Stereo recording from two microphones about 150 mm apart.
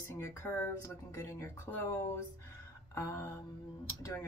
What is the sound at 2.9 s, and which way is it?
Speech, 15° left (ahead or behind).